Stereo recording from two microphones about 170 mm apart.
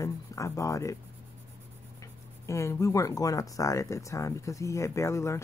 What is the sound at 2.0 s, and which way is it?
Speech, 15° left (ahead or behind).